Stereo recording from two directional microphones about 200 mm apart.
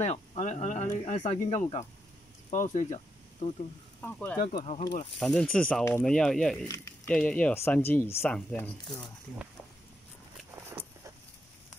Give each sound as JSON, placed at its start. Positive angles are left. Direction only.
{"t": 0.0, "sound": "speech", "side_deg": 30}
{"t": 4.0, "sound": "speech", "side_deg": 10}
{"t": 4.4, "sound": "speech", "side_deg": 35}
{"t": 5.2, "sound": "speech", "side_deg": 5}
{"t": 10.7, "sound": "vehicle", "side_deg": -10}